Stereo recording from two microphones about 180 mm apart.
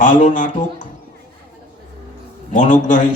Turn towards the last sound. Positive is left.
turn(degrees=45)  # may be behind; listen again after turning